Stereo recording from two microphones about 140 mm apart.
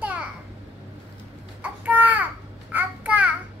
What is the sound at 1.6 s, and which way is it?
Babbling, 10° right (ahead or behind).